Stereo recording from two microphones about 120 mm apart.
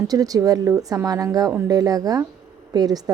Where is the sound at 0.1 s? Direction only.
30° right (ahead or behind).